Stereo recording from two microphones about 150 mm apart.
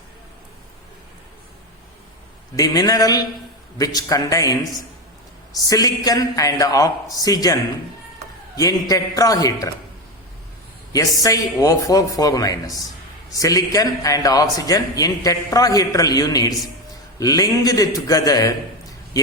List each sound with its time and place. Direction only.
2.6 s a man's voice: 25° left (ahead or behind)
5.5 s a man's voice: 25° left (ahead or behind)
10.9 s a man's voice: 25° left (ahead or behind)